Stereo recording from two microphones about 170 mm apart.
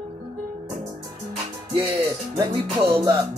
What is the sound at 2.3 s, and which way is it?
Music, 20° right (ahead or behind).